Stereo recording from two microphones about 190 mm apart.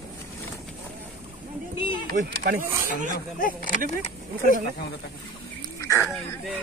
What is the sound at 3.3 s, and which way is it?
Speech, 45° left (ahead or behind).